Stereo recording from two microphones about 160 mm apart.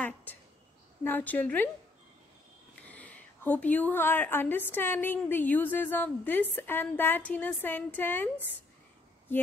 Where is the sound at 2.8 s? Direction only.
10° left (ahead or behind).